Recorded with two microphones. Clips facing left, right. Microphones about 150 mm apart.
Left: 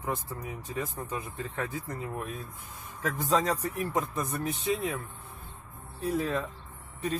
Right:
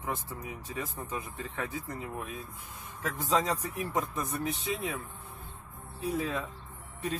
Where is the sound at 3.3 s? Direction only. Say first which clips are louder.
Left 2 dB; 10° right (ahead or behind).